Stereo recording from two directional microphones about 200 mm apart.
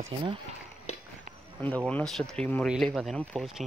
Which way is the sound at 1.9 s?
5° left (ahead or behind).